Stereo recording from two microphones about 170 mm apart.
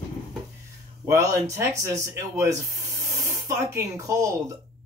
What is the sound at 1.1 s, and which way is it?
Speech, 20° right (ahead or behind).